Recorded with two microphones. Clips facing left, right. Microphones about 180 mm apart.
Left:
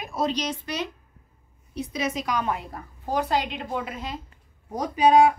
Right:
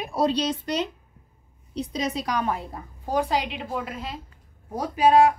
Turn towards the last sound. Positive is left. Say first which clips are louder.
# even
turn(degrees=-5)  # may be behind; listen again after turning